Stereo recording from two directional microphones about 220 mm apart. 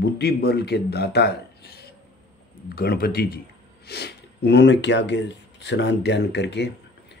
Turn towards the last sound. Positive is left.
turn(degrees=50)  # may be behind; listen again after turning